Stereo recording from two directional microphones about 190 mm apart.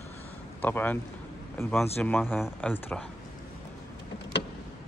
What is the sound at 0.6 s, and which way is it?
Speech, 10° left (ahead or behind).